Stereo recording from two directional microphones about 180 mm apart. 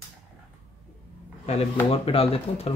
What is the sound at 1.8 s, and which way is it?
Speech, 30° left (ahead or behind).